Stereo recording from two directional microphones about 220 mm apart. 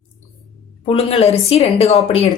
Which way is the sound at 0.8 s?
25° left (ahead or behind).